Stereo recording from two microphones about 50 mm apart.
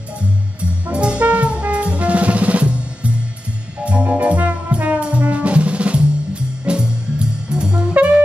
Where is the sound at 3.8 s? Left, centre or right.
Right.